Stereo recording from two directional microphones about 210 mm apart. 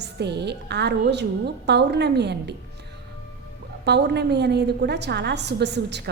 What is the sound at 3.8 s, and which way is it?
A woman's voice, 55° right (ahead or behind).